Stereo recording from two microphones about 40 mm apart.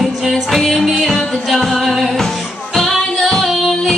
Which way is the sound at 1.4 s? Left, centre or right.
Centre.